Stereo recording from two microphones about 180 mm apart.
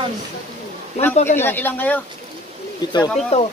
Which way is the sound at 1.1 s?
40° left (ahead or behind).